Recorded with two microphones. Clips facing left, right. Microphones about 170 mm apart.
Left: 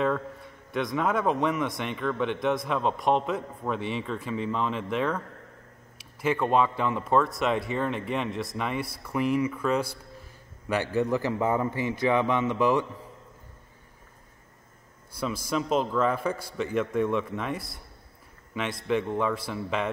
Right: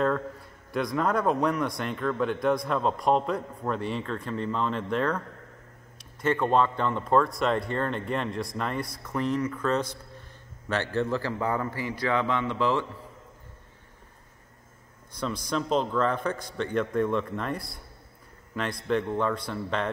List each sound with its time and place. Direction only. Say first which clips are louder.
0.0 s a man's voice: right 1 dB; centre (ahead or behind); by 12.8 s 15° left (ahead or behind)
15.1 s a man's voice: left 1 dB; 5° left (ahead or behind)